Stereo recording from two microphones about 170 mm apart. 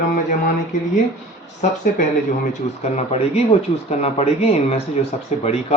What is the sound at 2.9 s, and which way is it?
Speech, 40° left (ahead or behind).